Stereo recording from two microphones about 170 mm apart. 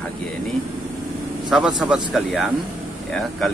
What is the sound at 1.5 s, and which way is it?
Speech, centre (ahead or behind).